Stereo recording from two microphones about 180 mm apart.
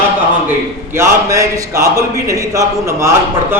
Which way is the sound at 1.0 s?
15° right (ahead or behind).